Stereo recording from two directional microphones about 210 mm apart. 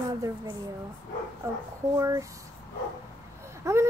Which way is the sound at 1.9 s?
15° right (ahead or behind).